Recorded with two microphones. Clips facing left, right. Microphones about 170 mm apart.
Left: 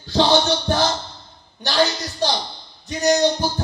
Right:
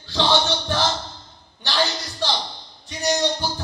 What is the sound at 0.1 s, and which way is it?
Speech, 45° left (ahead or behind).